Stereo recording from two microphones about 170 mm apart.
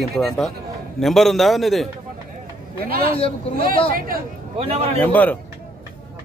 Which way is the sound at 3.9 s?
60° right (ahead or behind).